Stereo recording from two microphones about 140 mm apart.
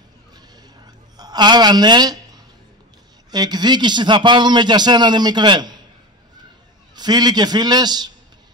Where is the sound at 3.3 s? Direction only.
30° right (ahead or behind).